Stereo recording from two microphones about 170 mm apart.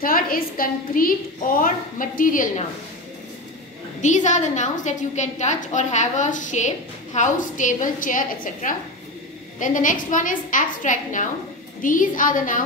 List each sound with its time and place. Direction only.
0.0 s a woman's voice: 55° left (ahead or behind)
4.0 s a woman's voice: 45° left (ahead or behind)